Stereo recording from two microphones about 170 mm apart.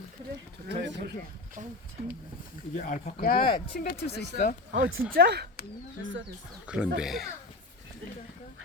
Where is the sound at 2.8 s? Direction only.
50° left (ahead or behind).